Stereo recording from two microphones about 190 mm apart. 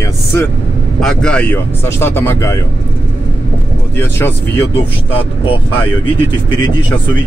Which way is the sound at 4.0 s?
10° left (ahead or behind).